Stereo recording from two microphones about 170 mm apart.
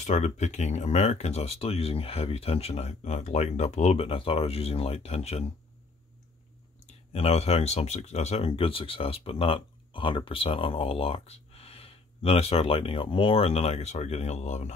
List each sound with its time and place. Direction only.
0.0 s speech: 45° left (ahead or behind)
7.1 s speech: 35° left (ahead or behind)